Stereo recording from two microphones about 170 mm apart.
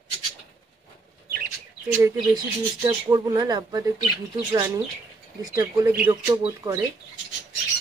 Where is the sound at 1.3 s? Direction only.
60° right (ahead or behind).